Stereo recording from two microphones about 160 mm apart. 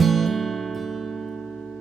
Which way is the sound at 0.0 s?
Centre (ahead or behind).